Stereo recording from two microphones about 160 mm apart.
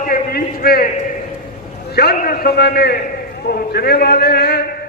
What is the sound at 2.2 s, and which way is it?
A man's voice, 75° left (ahead or behind).